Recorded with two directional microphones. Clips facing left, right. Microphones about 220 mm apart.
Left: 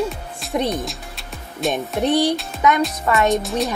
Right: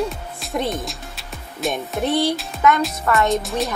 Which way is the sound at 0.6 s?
Centre (ahead or behind).